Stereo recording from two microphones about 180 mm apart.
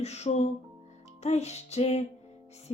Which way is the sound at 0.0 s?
35° left (ahead or behind).